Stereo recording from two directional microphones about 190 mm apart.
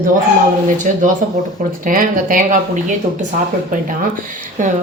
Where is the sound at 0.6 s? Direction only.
40° right (ahead or behind).